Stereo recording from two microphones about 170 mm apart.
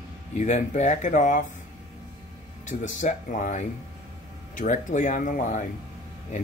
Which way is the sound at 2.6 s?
50° left (ahead or behind).